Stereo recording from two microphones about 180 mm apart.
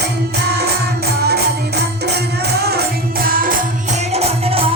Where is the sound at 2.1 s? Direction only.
65° right (ahead or behind).